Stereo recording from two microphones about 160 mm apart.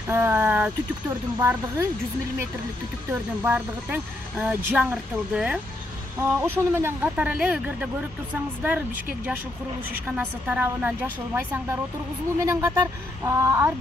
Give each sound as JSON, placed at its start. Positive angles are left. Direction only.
{"t": 0.1, "sound": "speech", "side_deg": -15}
{"t": 3.1, "sound": "speech", "side_deg": -10}
{"t": 6.1, "sound": "speech", "side_deg": -15}
{"t": 10.0, "sound": "speech", "side_deg": -10}